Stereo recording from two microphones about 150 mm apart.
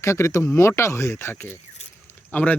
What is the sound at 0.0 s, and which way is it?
Speech, 20° left (ahead or behind).